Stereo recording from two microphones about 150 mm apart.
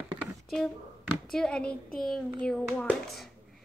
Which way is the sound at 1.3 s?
5° left (ahead or behind).